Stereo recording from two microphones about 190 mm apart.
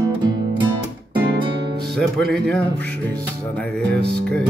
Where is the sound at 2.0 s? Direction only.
5° left (ahead or behind).